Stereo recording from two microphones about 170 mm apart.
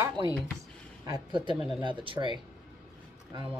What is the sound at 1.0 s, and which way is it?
Speech, 25° right (ahead or behind).